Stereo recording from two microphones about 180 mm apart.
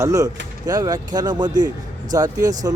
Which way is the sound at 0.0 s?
20° right (ahead or behind).